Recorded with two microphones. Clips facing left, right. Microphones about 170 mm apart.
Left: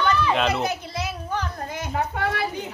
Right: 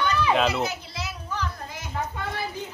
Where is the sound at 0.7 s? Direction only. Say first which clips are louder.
Left 6 dB; 55° left (ahead or behind).